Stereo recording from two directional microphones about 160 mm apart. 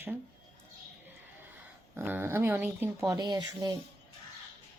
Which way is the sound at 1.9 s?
10° right (ahead or behind).